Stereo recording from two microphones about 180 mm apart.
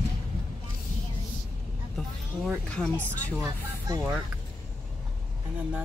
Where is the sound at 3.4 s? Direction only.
20° right (ahead or behind).